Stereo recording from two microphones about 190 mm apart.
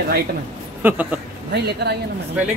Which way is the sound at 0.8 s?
10° right (ahead or behind).